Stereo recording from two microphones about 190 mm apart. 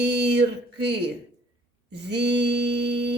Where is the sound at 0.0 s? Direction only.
65° right (ahead or behind).